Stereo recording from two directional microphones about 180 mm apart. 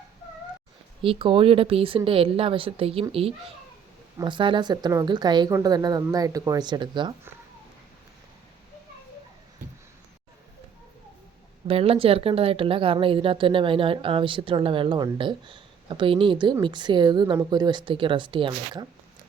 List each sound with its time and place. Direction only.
1.0 s speech: 30° right (ahead or behind)
11.7 s speech: 30° right (ahead or behind)